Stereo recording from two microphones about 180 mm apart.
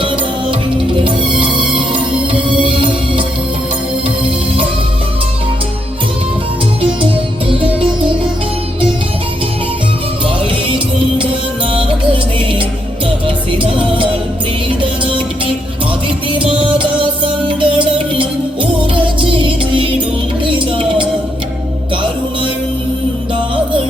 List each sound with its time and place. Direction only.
2.6 s music: 30° right (ahead or behind)
13.2 s music: 30° right (ahead or behind)
17.2 s music: 30° right (ahead or behind)
20.4 s music: 30° right (ahead or behind)